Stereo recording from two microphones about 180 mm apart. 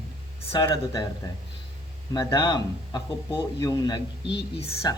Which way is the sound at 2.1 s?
25° left (ahead or behind).